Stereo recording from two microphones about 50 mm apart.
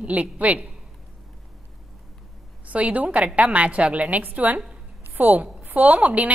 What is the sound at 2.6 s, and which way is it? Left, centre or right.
A woman's voice, right.